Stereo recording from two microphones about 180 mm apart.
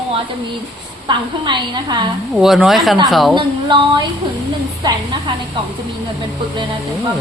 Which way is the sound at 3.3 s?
25° right (ahead or behind).